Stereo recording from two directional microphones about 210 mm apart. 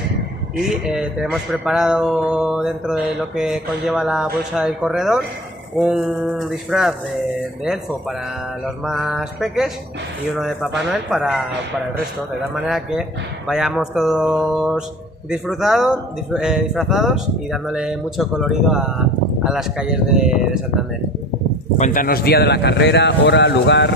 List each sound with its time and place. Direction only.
0.7 s speech: 5° right (ahead or behind)
8.8 s speech: centre (ahead or behind)
12.6 s speech: centre (ahead or behind)
21.7 s a man's voice: 40° left (ahead or behind); by 23.9 s 55° left (ahead or behind)